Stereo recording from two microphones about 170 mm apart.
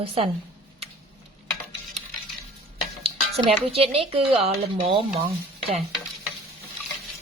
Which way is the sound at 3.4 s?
35° right (ahead or behind).